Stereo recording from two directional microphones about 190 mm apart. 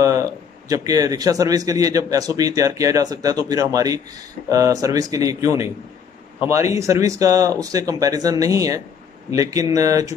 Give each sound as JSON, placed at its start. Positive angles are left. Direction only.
{"t": 0.0, "sound": "a man's voice", "side_deg": -15}